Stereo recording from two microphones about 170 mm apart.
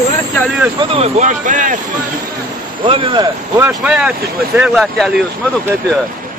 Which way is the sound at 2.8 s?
30° right (ahead or behind).